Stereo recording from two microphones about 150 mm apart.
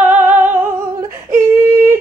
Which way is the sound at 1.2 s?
70° right (ahead or behind).